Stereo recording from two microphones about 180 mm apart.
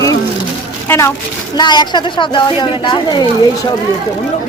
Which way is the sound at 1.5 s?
25° left (ahead or behind).